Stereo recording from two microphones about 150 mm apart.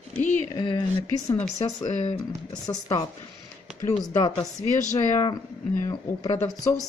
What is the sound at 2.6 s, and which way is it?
Speech, 25° left (ahead or behind).